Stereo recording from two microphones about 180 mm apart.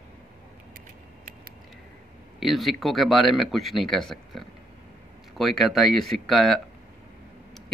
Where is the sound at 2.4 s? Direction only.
Centre (ahead or behind).